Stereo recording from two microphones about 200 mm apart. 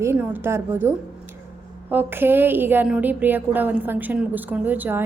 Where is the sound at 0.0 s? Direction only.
10° right (ahead or behind).